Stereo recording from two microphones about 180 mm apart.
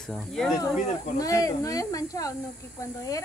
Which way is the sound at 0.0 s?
5° left (ahead or behind).